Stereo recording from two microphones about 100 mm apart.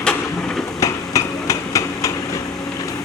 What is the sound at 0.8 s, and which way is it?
Hammer, 35° left (ahead or behind).